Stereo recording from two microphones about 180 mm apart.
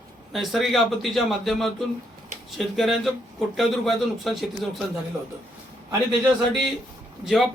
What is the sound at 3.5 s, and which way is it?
Speech, centre (ahead or behind).